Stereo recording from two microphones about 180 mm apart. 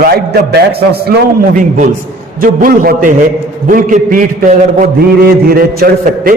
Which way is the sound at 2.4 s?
50° right (ahead or behind).